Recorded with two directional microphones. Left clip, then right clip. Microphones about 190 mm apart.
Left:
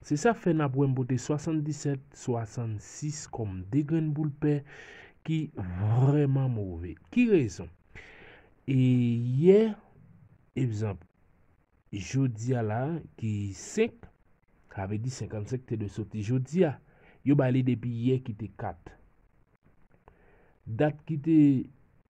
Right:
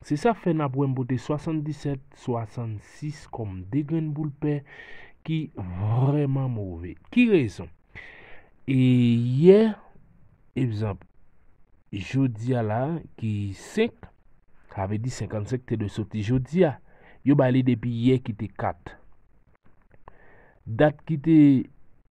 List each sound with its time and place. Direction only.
0.0 s speech: 20° right (ahead or behind)
8.7 s speech: 35° right (ahead or behind)
20.1 s speech: 30° right (ahead or behind)